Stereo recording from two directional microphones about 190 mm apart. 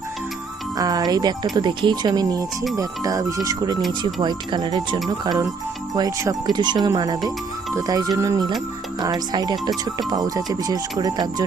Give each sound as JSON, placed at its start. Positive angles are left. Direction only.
{"t": 0.8, "sound": "speech", "side_deg": -20}